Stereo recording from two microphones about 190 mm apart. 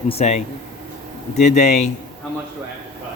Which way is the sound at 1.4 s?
35° left (ahead or behind).